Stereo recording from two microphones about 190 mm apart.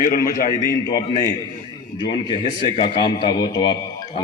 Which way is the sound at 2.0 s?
25° left (ahead or behind).